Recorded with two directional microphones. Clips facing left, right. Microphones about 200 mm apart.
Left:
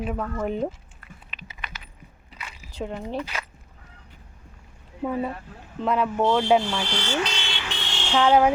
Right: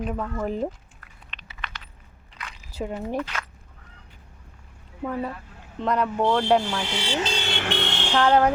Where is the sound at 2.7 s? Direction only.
5° right (ahead or behind).